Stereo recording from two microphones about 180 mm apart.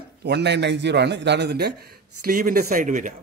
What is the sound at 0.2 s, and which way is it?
A man's voice, 70° right (ahead or behind).